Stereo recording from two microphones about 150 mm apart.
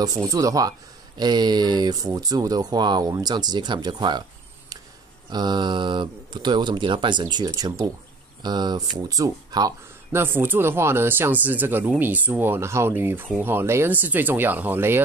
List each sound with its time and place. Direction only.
0.0 s speech: 25° right (ahead or behind)
5.3 s speech: 30° right (ahead or behind)